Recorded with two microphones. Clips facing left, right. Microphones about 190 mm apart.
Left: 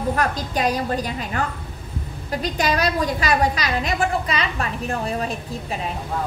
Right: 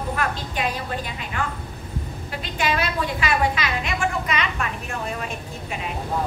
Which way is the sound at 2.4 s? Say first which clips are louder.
Left 3 dB; 40° left (ahead or behind).